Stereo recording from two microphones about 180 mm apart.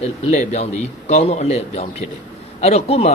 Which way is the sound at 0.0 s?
35° left (ahead or behind).